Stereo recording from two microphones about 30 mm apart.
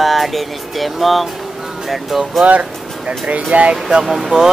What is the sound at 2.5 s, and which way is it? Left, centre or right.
Speech, right.